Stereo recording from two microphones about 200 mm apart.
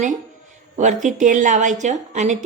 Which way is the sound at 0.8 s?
40° right (ahead or behind).